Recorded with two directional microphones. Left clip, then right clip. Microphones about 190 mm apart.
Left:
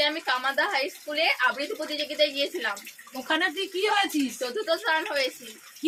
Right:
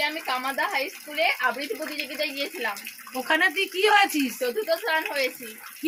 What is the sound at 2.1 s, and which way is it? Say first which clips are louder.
Speech: left 6 dB; 25° left (ahead or behind).